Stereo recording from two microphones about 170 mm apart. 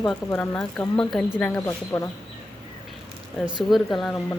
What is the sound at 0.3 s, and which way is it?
Speech, 5° left (ahead or behind).